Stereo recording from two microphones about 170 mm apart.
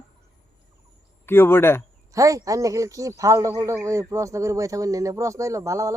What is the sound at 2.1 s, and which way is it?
A man's voice, 20° right (ahead or behind).